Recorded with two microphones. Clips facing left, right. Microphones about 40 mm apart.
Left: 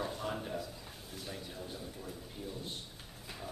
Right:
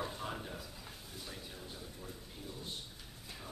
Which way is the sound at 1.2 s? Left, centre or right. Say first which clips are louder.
Left 5 dB; centre.